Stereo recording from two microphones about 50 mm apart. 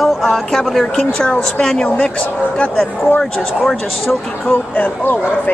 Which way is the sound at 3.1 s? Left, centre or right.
Centre.